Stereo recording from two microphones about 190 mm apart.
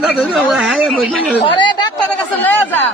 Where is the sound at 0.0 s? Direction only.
Centre (ahead or behind).